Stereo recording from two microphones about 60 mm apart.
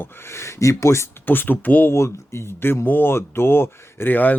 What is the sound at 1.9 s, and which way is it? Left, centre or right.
Speech, left.